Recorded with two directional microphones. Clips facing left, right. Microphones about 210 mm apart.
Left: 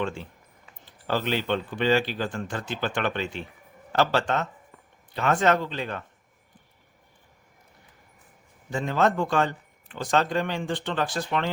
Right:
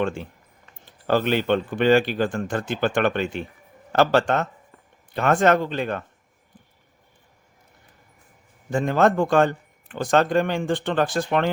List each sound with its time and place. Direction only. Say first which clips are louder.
0.0 s a man's voice: right 5 dB; 50° right (ahead or behind)
8.7 s a man's voice: right 5 dB; 50° right (ahead or behind)